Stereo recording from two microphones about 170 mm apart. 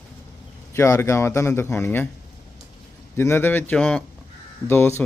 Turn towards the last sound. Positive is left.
turn(degrees=15)  # may be behind; listen again after turning